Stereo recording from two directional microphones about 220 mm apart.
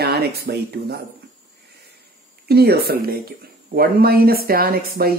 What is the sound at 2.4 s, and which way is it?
Speech, 45° right (ahead or behind).